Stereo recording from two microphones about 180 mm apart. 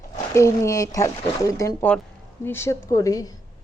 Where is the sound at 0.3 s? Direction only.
15° left (ahead or behind).